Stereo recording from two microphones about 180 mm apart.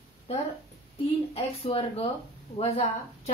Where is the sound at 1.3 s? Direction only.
30° left (ahead or behind).